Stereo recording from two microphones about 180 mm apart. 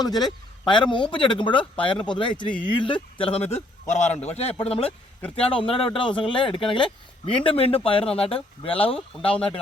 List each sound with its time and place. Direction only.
0.0 s a man's voice: 20° left (ahead or behind)